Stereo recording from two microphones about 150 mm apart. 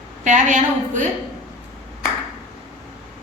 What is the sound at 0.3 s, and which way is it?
Speech, 55° right (ahead or behind).